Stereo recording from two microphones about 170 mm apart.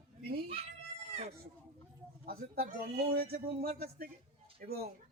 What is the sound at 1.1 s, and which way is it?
Speech, 40° right (ahead or behind).